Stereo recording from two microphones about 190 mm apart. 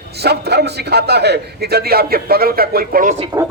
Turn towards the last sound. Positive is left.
turn(degrees=-20)  # may be behind; listen again after turning